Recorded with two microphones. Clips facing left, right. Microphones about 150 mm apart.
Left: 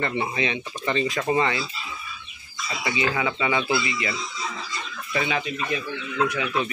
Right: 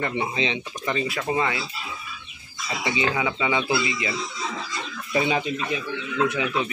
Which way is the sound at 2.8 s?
20° right (ahead or behind).